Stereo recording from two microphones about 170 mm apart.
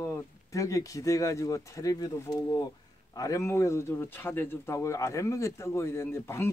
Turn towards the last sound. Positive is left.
turn(degrees=15)  # may be behind; listen again after turning